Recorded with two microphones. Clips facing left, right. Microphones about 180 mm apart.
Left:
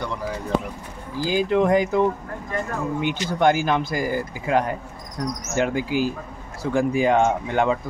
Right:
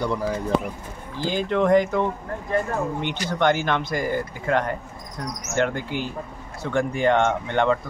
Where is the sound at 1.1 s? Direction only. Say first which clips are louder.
Left 3 dB; 5° left (ahead or behind).